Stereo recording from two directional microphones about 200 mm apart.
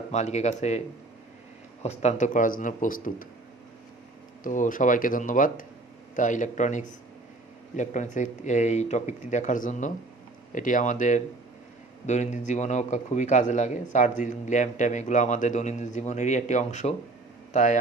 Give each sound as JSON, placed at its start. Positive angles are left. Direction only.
{"t": 0.1, "sound": "a man's voice", "side_deg": 35}
{"t": 1.8, "sound": "a man's voice", "side_deg": 35}
{"t": 4.4, "sound": "a man's voice", "side_deg": 40}